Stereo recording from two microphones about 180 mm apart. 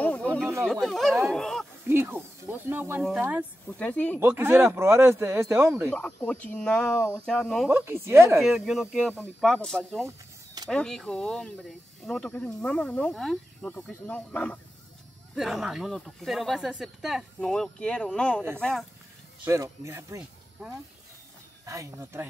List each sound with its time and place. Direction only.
0.0 s snake: 10° left (ahead or behind)
0.7 s speech: centre (ahead or behind)
1.9 s speech: 10° right (ahead or behind)
3.7 s speech: 5° left (ahead or behind)
4.2 s speech: 15° right (ahead or behind)
6.2 s speech: 10° left (ahead or behind)
7.7 s speech: 15° right (ahead or behind)
8.4 s speech: centre (ahead or behind)
10.0 s vehicle: 20° right (ahead or behind)
10.7 s speech: 5° left (ahead or behind)
19.4 s speech: 15° right (ahead or behind)
21.6 s speech: 15° right (ahead or behind)